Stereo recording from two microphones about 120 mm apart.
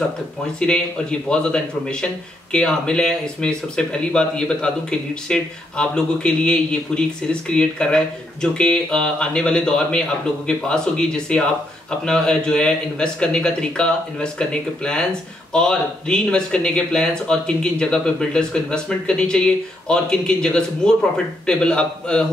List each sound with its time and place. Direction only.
0.6 s speech: 5° left (ahead or behind)